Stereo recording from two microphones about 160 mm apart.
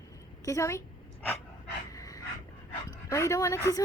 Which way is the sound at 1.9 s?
20° left (ahead or behind).